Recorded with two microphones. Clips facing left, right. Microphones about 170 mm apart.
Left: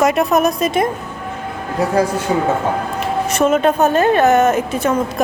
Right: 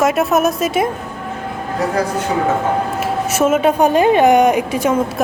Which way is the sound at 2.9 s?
5° right (ahead or behind).